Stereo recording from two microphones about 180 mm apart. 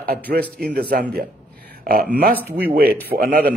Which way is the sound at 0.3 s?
65° right (ahead or behind).